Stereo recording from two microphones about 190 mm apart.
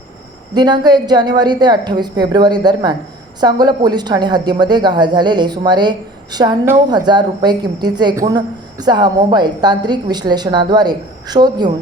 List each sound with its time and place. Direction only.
0.5 s a woman's voice: 20° right (ahead or behind)